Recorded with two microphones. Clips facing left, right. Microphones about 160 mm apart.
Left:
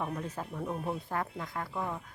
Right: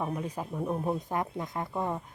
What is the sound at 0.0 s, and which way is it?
Speech, 15° right (ahead or behind).